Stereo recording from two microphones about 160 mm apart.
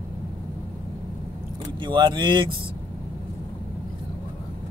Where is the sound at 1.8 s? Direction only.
30° right (ahead or behind).